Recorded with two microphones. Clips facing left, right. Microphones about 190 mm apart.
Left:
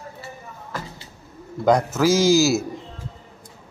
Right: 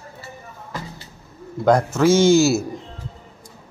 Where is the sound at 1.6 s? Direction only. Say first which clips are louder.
Right 2 dB; centre (ahead or behind).